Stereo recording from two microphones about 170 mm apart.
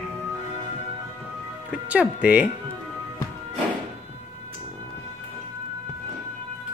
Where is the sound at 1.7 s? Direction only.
5° right (ahead or behind).